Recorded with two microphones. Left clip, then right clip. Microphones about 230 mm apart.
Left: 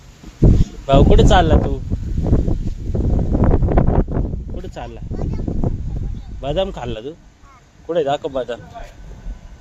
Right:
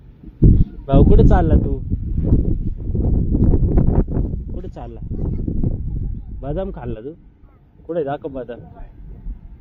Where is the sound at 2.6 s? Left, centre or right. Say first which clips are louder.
Left 1 dB; centre.